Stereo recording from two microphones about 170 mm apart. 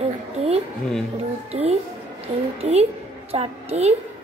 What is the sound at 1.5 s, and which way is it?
A child's voice, 35° right (ahead or behind).